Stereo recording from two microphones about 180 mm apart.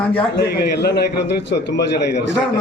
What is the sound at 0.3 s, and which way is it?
A man's voice, 65° left (ahead or behind).